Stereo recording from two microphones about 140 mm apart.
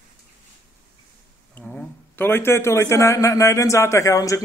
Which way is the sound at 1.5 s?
10° left (ahead or behind).